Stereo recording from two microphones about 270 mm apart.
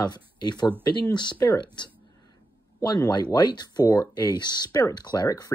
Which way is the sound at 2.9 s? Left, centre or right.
Centre.